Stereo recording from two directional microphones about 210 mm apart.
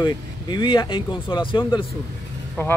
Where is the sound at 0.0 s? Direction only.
20° left (ahead or behind).